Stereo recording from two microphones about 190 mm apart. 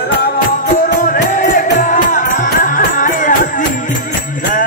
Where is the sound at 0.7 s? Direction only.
45° left (ahead or behind).